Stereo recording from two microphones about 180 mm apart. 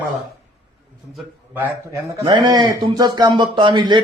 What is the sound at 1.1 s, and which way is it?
A man's voice, 10° right (ahead or behind).